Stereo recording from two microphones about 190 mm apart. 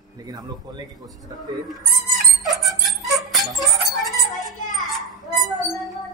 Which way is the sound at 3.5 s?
Centre (ahead or behind).